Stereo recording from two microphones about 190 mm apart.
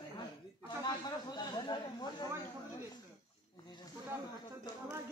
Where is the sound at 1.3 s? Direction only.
20° left (ahead or behind).